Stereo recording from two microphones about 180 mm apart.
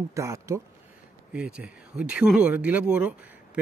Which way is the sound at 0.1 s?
15° right (ahead or behind).